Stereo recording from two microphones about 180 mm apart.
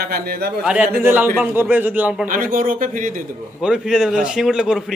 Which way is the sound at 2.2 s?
50° right (ahead or behind).